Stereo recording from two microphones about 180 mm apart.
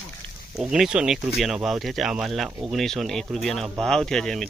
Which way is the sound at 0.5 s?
Centre (ahead or behind).